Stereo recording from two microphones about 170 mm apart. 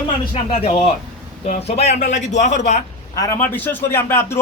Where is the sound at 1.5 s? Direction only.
40° left (ahead or behind).